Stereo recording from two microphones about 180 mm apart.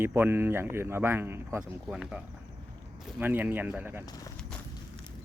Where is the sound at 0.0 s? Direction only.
10° right (ahead or behind).